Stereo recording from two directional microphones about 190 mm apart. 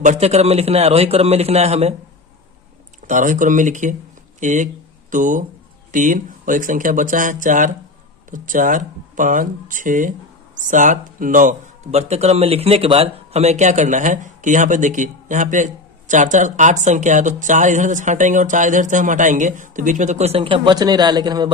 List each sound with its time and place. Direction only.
0.0 s speech: 40° right (ahead or behind)
3.1 s speech: 40° right (ahead or behind); by 21.5 s 20° right (ahead or behind)